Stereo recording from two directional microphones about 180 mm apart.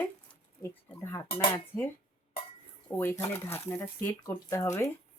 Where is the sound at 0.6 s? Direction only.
15° left (ahead or behind).